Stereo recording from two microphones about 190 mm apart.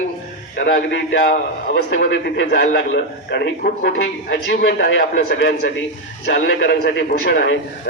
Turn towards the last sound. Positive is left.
turn(degrees=70)  # may be behind; listen again after turning